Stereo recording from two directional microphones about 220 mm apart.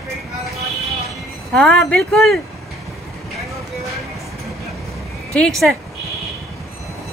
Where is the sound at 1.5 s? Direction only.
5° left (ahead or behind).